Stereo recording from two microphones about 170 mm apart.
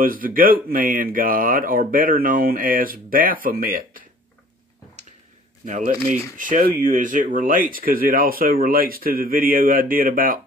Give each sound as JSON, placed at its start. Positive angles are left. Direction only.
{"t": 0.0, "sound": "speech", "side_deg": -55}
{"t": 5.7, "sound": "speech", "side_deg": -50}